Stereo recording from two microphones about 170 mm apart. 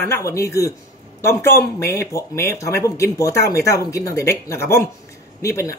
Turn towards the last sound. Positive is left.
turn(degrees=15)  # may be behind; listen again after turning